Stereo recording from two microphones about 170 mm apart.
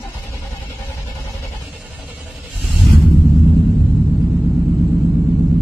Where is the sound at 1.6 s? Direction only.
5° right (ahead or behind).